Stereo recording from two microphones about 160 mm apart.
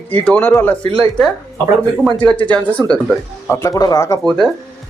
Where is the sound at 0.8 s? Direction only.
35° right (ahead or behind).